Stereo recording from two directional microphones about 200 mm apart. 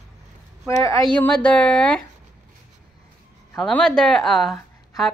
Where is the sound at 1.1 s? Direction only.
5° left (ahead or behind).